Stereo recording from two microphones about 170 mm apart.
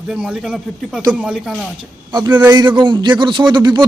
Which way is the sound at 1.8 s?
25° right (ahead or behind).